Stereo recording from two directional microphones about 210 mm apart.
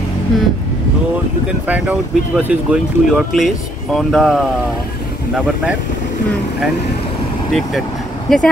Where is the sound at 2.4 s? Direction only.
5° right (ahead or behind).